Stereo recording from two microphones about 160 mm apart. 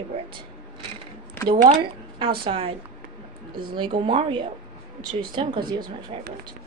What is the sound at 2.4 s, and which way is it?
Speech, 35° right (ahead or behind).